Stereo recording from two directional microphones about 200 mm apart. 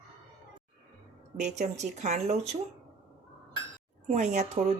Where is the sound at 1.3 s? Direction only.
35° right (ahead or behind).